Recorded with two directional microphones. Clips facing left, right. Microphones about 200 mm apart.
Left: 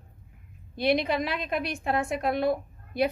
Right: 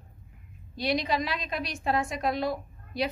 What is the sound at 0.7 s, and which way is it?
A woman's voice, 55° left (ahead or behind).